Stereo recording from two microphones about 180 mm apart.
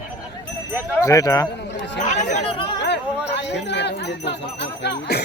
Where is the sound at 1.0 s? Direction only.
20° left (ahead or behind).